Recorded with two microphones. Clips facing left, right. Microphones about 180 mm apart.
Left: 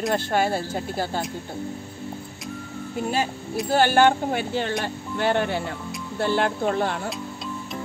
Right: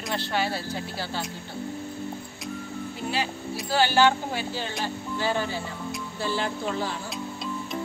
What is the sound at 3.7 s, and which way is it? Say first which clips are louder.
Speech: left 3 dB; 50° left (ahead or behind).